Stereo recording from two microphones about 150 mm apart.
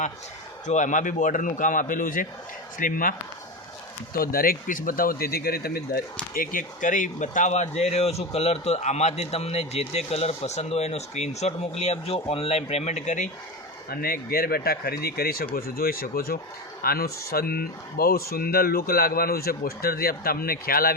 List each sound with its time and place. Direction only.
0.7 s a man's voice: 55° left (ahead or behind); by 6.0 s 90° left
6.3 s speech: 70° left (ahead or behind)
13.9 s speech: 80° left